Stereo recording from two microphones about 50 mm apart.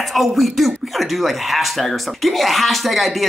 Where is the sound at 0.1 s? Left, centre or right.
Centre.